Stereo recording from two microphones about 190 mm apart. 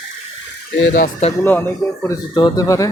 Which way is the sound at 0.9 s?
45° left (ahead or behind).